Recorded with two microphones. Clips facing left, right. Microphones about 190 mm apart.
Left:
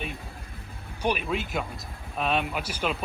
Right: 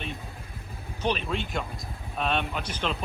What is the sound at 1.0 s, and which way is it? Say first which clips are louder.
Speech: left 1 dB; 10° left (ahead or behind).